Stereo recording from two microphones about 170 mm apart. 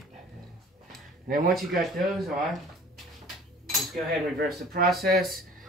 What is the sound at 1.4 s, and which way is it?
Speech, centre (ahead or behind).